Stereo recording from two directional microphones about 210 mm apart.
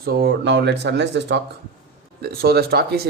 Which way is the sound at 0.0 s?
50° right (ahead or behind).